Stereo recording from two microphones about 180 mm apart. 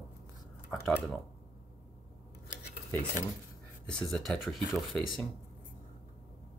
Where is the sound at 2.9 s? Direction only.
10° left (ahead or behind).